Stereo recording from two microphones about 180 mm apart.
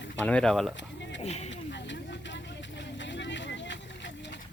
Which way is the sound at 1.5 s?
85° left.